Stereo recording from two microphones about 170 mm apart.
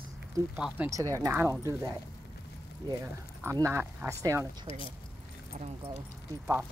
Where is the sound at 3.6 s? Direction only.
15° right (ahead or behind).